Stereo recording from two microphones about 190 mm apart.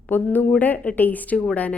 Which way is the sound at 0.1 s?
10° left (ahead or behind).